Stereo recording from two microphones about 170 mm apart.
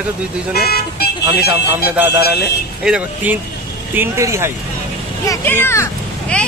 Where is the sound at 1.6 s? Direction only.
10° right (ahead or behind).